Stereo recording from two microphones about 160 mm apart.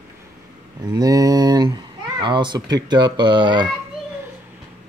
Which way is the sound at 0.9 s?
20° right (ahead or behind).